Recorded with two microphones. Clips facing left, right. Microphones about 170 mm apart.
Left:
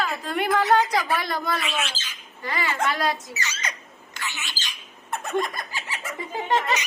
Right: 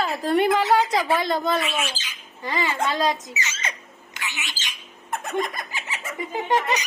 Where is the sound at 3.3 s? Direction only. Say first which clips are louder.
Right 1 dB; 20° right (ahead or behind).